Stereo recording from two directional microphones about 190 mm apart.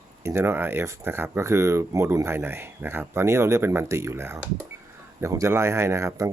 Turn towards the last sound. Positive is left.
turn(degrees=-15)  # may be behind; listen again after turning